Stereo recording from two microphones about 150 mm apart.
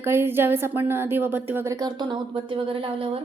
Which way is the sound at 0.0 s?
15° right (ahead or behind).